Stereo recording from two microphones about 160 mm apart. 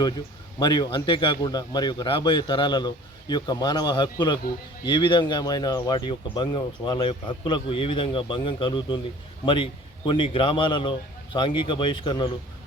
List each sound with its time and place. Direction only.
0.6 s speech: 30° left (ahead or behind)
10.1 s speech: 30° left (ahead or behind)